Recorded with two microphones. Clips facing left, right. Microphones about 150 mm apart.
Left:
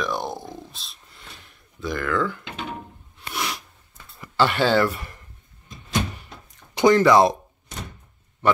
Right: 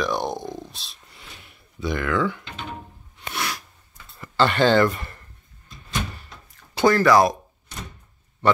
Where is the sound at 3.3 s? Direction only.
10° left (ahead or behind).